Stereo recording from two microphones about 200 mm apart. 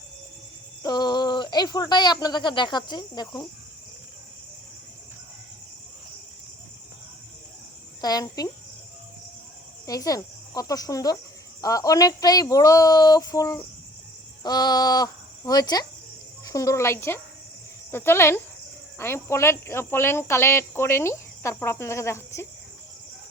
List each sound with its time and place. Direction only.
0.8 s speech: 20° left (ahead or behind)
8.0 s cricket: 20° left (ahead or behind)
9.8 s speech: 15° left (ahead or behind)